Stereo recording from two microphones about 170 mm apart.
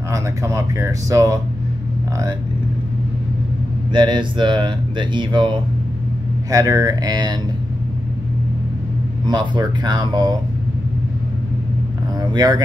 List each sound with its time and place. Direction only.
0.1 s speech: 20° right (ahead or behind)
3.9 s speech: 25° right (ahead or behind)
9.2 s speech: 25° right (ahead or behind)
12.2 s vehicle: 25° right (ahead or behind)